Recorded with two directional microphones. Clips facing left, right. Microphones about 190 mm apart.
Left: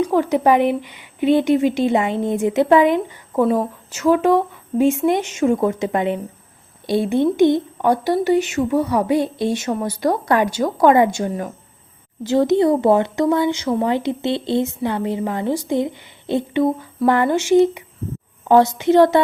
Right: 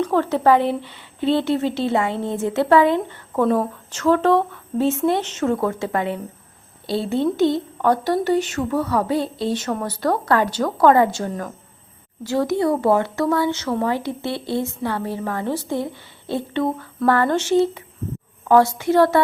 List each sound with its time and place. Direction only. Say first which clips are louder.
0.0 s a woman's voice: left 2 dB; 15° left (ahead or behind)